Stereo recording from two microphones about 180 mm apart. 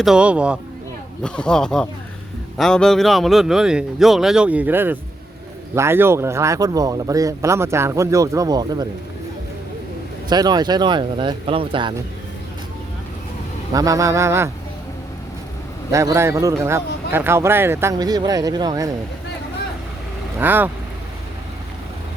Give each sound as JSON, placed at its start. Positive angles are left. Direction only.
{"t": 0.0, "sound": "speech", "side_deg": -5}
{"t": 1.2, "sound": "speech", "side_deg": 5}
{"t": 10.2, "sound": "speech", "side_deg": -20}
{"t": 13.7, "sound": "speech", "side_deg": -20}
{"t": 15.9, "sound": "speech", "side_deg": -15}
{"t": 20.4, "sound": "speech", "side_deg": -10}